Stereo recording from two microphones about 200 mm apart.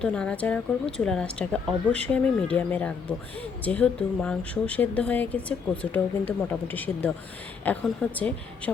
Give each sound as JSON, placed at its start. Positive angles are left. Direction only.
{"t": 0.0, "sound": "speech", "side_deg": 5}